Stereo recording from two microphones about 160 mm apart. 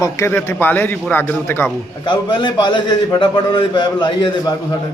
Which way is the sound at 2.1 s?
30° left (ahead or behind).